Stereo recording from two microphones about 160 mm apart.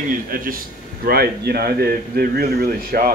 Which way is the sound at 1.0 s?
75° right (ahead or behind).